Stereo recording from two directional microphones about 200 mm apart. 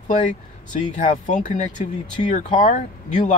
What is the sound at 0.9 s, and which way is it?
Speech, 40° left (ahead or behind).